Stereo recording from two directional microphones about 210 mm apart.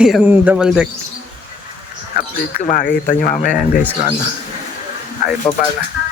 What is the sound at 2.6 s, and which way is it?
Speech, 40° left (ahead or behind).